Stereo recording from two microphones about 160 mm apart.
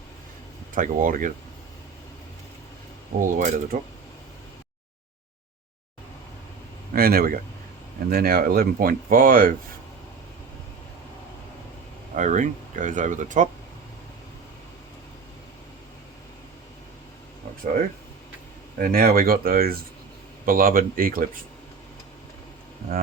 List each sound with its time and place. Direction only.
0.7 s speech: 55° right (ahead or behind)
3.2 s speech: 55° right (ahead or behind)
6.9 s speech: 65° right (ahead or behind)
12.1 s speech: 50° right (ahead or behind)
18.8 s speech: 65° right (ahead or behind)